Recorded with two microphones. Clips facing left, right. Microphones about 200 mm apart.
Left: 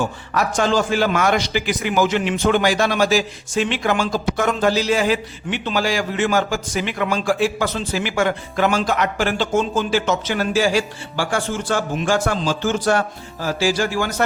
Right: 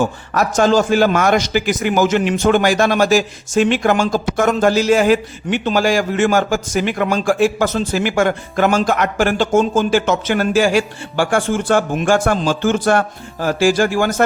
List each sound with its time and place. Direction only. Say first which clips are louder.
0.0 s a man's voice: right 4 dB; 45° right (ahead or behind)